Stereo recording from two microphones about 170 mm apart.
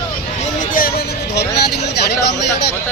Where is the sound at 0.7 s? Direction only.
65° left (ahead or behind).